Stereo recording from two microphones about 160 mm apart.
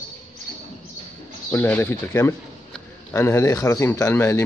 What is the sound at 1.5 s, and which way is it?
Speech, 10° left (ahead or behind).